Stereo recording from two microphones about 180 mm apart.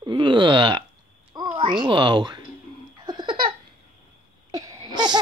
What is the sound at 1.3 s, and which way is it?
Babbling, 25° right (ahead or behind).